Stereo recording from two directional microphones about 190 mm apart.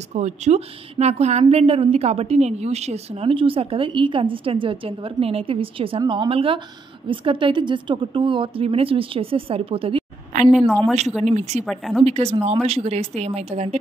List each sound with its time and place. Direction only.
0.1 s a woman's voice: 35° right (ahead or behind)
10.3 s a sound: 45° right (ahead or behind)
11.2 s a woman's voice: 35° right (ahead or behind)
11.6 s a woman's voice: centre (ahead or behind)
12.0 s a woman's voice: 30° right (ahead or behind)